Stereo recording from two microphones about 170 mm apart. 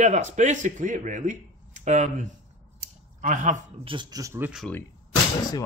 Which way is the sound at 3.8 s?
25° right (ahead or behind).